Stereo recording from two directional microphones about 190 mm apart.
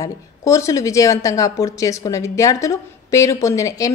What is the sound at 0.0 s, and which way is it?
Speech, 15° left (ahead or behind).